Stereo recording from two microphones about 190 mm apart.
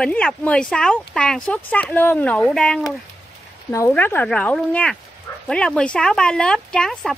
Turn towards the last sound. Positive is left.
turn(degrees=5)  # may be behind; listen again after turning